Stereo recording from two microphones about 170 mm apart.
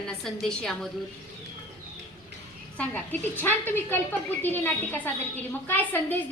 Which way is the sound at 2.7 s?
10° left (ahead or behind).